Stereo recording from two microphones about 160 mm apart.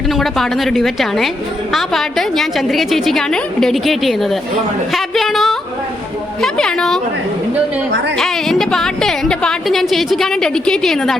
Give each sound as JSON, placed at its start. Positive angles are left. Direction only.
{"t": 0.1, "sound": "a woman's voice", "side_deg": 0}
{"t": 8.2, "sound": "a woman's voice", "side_deg": 0}